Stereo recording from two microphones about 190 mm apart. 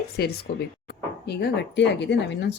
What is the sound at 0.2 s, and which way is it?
Speech, 55° left (ahead or behind).